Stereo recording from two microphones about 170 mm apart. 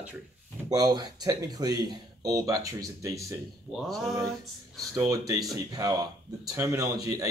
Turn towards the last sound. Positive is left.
turn(degrees=-20)  # may be behind; listen again after turning